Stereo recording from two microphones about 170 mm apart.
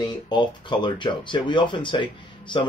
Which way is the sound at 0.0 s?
25° left (ahead or behind).